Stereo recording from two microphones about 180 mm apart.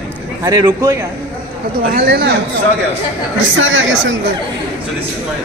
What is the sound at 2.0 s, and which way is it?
Speech, 65° right (ahead or behind).